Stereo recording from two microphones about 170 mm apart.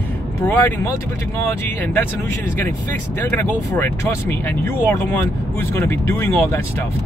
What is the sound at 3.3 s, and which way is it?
Speech, 10° left (ahead or behind).